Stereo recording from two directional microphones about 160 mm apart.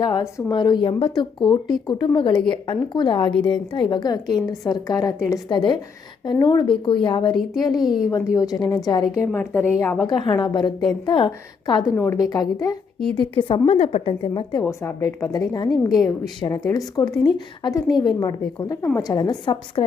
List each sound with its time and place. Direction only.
0.0 s a woman's voice: 25° left (ahead or behind)
7.9 s speech: 5° right (ahead or behind)
8.4 s a woman's voice: 25° left (ahead or behind)
10.1 s a woman's voice: 25° left (ahead or behind)
14.6 s a woman's voice: 20° left (ahead or behind)